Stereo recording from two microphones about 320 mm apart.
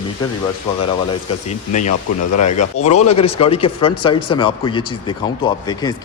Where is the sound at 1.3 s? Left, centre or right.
Left.